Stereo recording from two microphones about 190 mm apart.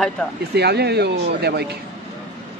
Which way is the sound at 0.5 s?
60° right (ahead or behind).